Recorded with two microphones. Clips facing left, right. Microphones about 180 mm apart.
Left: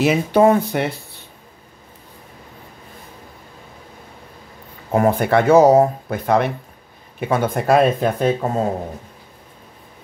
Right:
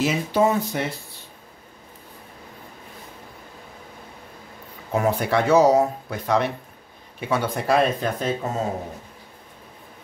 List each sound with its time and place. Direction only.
0.0 s speech: 60° left (ahead or behind)
4.9 s speech: 55° left (ahead or behind)